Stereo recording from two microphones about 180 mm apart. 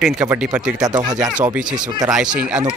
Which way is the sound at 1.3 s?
5° right (ahead or behind).